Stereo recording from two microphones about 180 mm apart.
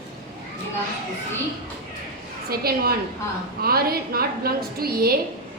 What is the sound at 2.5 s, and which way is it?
A woman's voice, 55° right (ahead or behind).